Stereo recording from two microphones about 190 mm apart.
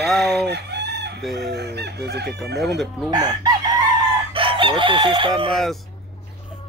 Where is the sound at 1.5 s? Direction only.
60° right (ahead or behind).